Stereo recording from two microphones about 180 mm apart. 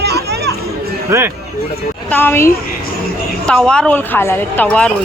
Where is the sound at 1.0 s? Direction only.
15° right (ahead or behind).